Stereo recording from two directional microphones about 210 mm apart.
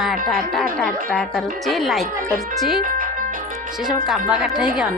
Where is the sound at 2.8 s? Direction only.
40° right (ahead or behind).